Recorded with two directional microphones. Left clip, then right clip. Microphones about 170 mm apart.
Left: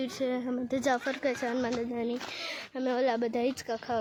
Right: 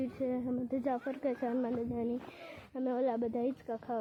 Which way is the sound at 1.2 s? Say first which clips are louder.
Left 4 dB; 5° left (ahead or behind).